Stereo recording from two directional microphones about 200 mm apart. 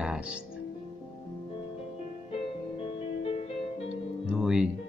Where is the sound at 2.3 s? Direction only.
30° left (ahead or behind).